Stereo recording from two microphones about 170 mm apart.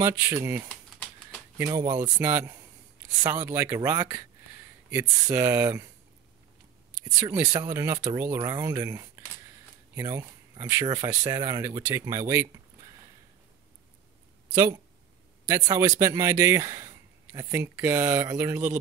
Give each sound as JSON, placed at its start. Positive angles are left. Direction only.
{"t": 0.0, "sound": "speech", "side_deg": -20}
{"t": 7.1, "sound": "speech", "side_deg": -20}
{"t": 14.5, "sound": "speech", "side_deg": -15}